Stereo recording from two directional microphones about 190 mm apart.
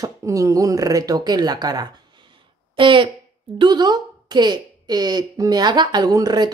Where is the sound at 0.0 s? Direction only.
15° right (ahead or behind).